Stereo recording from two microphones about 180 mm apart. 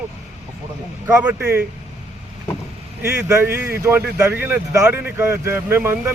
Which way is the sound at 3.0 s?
10° right (ahead or behind).